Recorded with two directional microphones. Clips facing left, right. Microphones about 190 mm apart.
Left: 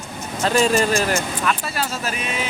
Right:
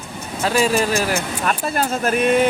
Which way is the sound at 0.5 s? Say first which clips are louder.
Even; 10° right (ahead or behind).